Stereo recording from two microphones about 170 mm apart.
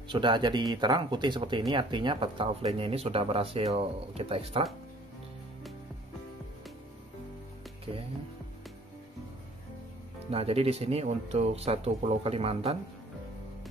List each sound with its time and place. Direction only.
0.1 s speech: 25° right (ahead or behind)
10.3 s speech: 35° right (ahead or behind)